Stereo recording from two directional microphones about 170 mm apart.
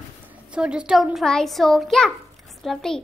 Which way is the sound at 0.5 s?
5° right (ahead or behind).